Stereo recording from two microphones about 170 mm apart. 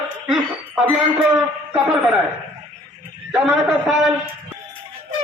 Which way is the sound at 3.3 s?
5° right (ahead or behind).